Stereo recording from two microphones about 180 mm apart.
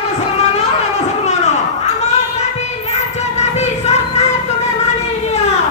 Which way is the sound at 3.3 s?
40° left (ahead or behind).